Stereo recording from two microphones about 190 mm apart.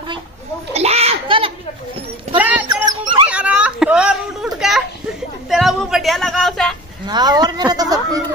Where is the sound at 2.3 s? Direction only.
10° right (ahead or behind).